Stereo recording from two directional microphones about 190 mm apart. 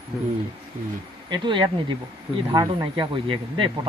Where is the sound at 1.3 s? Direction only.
25° right (ahead or behind).